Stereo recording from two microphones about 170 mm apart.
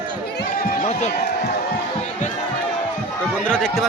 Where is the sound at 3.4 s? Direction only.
5° left (ahead or behind).